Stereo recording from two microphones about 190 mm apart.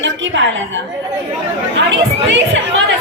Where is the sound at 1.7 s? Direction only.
75° right (ahead or behind).